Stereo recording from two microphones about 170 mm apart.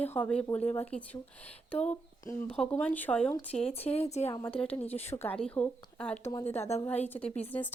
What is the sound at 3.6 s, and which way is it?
Speech, 35° left (ahead or behind).